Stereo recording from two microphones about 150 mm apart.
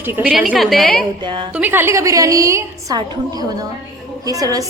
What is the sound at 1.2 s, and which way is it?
Speech, 30° right (ahead or behind).